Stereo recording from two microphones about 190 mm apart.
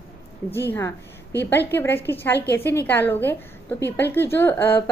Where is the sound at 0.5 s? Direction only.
10° left (ahead or behind).